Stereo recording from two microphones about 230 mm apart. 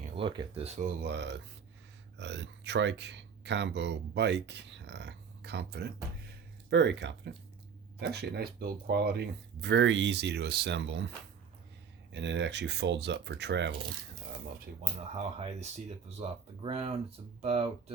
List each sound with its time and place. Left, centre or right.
0.2 s speech: right
1.0 s speech: right
12.1 s speech: right
15.2 s speech: right